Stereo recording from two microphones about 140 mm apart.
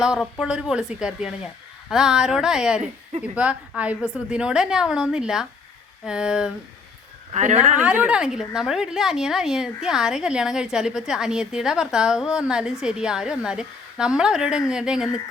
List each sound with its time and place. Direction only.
0.0 s a woman's voice: 5° right (ahead or behind)
7.3 s speech: 55° right (ahead or behind)
7.8 s a woman's voice: 10° right (ahead or behind)